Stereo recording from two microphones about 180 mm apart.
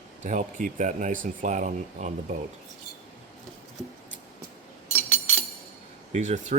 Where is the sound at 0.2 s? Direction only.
45° right (ahead or behind).